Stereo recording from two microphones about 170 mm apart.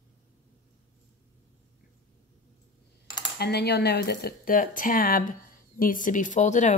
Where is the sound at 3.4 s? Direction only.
70° left (ahead or behind).